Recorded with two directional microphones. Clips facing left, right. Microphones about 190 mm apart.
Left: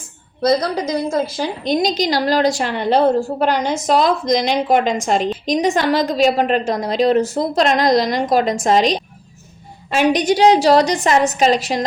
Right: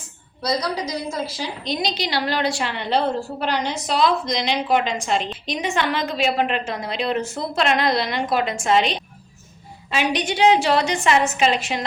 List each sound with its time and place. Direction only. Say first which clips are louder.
0.4 s a woman's voice: left 7 dB; 50° left (ahead or behind)